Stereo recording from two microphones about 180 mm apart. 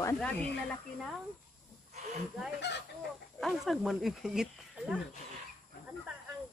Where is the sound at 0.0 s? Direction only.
5° left (ahead or behind).